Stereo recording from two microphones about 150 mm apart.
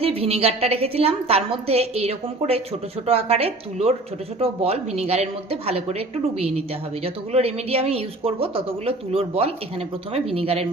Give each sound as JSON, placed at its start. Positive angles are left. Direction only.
{"t": 0.0, "sound": "a woman's voice", "side_deg": -40}
{"t": 7.0, "sound": "speech", "side_deg": -40}